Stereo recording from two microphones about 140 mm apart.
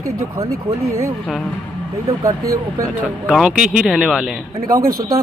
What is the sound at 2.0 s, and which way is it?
Speech, 25° right (ahead or behind).